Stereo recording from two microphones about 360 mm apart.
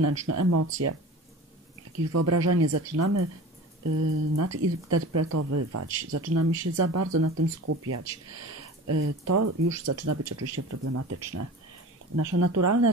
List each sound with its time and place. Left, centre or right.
0.3 s speech: right
2.1 s speech: right